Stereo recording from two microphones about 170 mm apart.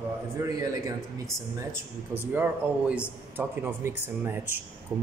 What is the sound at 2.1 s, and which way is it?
Speech, 10° right (ahead or behind).